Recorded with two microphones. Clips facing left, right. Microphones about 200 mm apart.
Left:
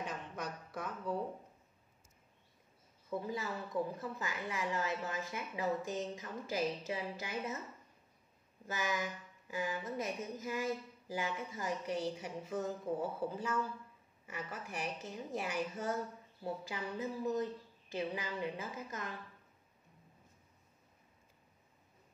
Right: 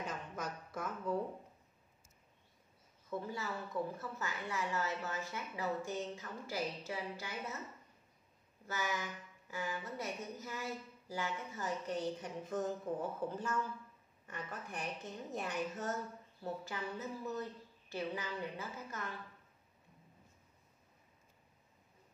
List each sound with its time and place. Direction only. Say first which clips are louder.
0.0 s a sound: even; centre (ahead or behind)
3.1 s a woman's voice: left 2 dB; 15° left (ahead or behind)
8.6 s a woman's voice: left 2 dB; 15° left (ahead or behind)